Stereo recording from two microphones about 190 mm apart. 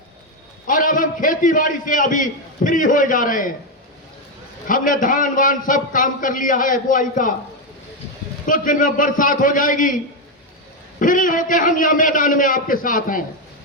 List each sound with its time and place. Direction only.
0.7 s a man's voice: 45° left (ahead or behind)
4.7 s a man's voice: 45° left (ahead or behind)
8.4 s a man's voice: 45° left (ahead or behind)
11.0 s a man's voice: 45° left (ahead or behind)